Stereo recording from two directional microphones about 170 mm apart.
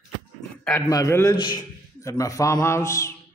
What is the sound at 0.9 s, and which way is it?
A man's voice, 20° left (ahead or behind).